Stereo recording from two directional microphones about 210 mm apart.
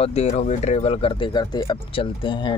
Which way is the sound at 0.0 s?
30° left (ahead or behind).